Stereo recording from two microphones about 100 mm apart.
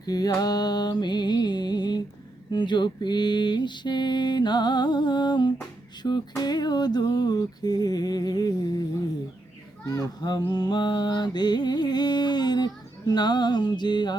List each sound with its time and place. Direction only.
0.0 s music: 40° left (ahead or behind)
9.9 s a child's voice: 40° left (ahead or behind)
10.5 s music: 45° left (ahead or behind)